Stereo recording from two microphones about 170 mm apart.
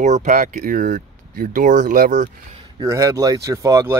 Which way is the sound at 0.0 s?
45° right (ahead or behind).